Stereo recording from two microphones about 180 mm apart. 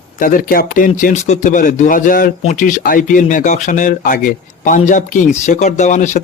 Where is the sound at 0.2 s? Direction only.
50° left (ahead or behind).